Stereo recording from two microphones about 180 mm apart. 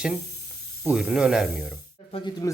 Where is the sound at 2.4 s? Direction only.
15° left (ahead or behind).